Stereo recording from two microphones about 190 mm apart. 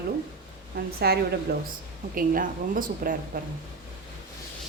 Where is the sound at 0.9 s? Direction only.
55° right (ahead or behind).